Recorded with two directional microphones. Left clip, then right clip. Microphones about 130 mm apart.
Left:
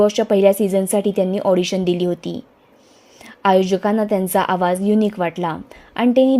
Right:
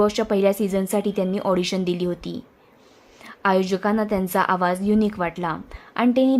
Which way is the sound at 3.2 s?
25° left (ahead or behind).